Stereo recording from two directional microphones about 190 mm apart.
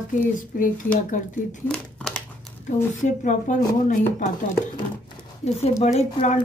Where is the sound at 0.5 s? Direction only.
45° left (ahead or behind).